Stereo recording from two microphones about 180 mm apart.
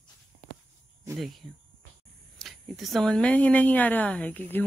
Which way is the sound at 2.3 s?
Centre (ahead or behind).